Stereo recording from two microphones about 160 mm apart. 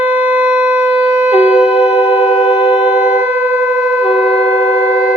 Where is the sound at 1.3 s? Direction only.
40° left (ahead or behind).